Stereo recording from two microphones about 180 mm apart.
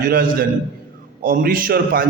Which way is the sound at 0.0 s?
50° right (ahead or behind).